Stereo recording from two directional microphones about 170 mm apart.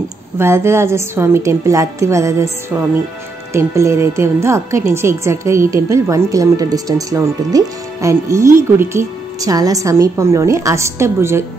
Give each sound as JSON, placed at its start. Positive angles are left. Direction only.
{"t": 0.4, "sound": "a woman's voice", "side_deg": -15}